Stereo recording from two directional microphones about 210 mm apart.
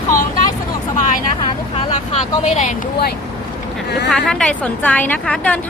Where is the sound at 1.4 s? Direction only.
25° left (ahead or behind).